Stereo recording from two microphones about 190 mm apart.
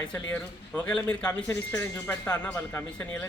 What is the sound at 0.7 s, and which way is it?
Speech, 5° left (ahead or behind).